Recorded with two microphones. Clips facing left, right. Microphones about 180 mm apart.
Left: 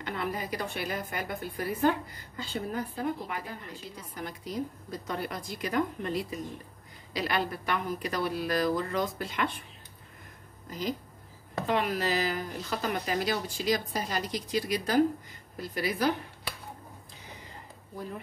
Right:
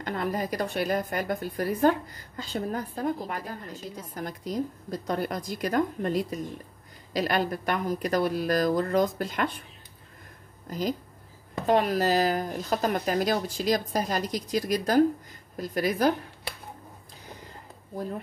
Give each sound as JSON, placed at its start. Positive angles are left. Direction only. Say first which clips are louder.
{"t": 0.0, "sound": "a woman's voice", "louder": "right 4 dB", "side_deg": -45}
{"t": 10.7, "sound": "a woman's voice", "louder": "right 4 dB", "side_deg": -40}